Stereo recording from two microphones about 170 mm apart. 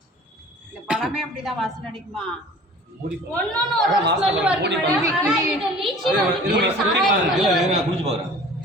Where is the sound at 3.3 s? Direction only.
5° left (ahead or behind).